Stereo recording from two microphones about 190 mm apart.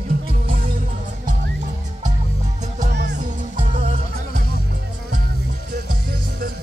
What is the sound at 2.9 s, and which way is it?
Music, 60° right (ahead or behind).